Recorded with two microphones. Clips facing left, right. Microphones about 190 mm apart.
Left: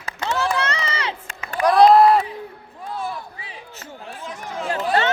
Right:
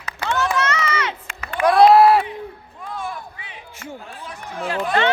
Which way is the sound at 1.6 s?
5° right (ahead or behind).